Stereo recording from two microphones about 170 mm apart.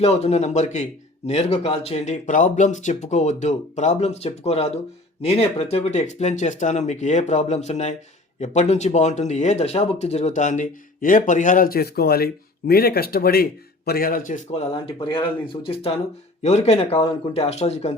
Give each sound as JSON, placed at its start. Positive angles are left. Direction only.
{"t": 0.0, "sound": "speech", "side_deg": 40}